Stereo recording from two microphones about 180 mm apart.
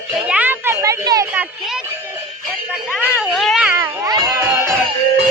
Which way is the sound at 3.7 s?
20° right (ahead or behind).